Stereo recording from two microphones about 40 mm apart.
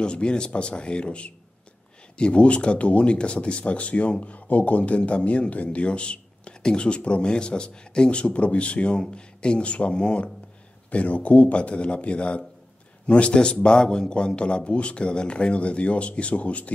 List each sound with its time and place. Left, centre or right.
0.0 s a man's voice: left